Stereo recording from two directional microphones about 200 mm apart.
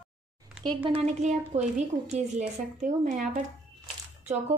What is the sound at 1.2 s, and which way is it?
A woman's voice, 35° right (ahead or behind).